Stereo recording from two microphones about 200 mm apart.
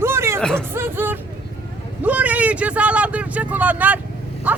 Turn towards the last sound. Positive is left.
turn(degrees=-5)  # may be behind; listen again after turning